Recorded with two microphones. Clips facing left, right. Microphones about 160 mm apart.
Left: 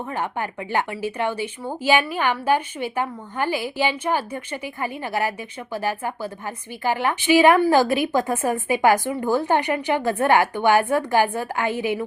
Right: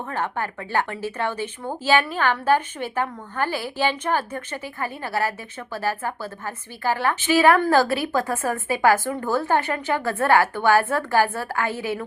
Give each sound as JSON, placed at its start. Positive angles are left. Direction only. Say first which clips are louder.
{"t": 0.1, "sound": "a woman's voice", "louder": "right 1 dB", "side_deg": 15}